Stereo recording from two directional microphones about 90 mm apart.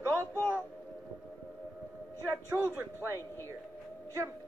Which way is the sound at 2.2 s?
30° right (ahead or behind).